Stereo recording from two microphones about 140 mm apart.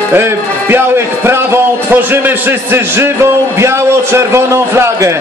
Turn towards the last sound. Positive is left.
turn(degrees=-20)  # may be behind; listen again after turning